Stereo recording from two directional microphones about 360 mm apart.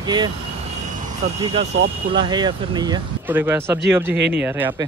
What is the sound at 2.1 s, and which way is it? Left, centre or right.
Speech, centre.